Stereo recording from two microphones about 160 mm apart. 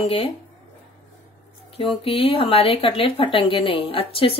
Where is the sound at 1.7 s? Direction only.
35° left (ahead or behind).